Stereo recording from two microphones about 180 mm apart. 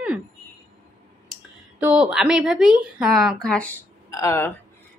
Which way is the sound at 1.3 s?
5° right (ahead or behind).